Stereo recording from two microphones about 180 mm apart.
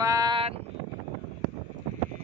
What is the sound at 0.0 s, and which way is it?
Vehicle, 20° right (ahead or behind).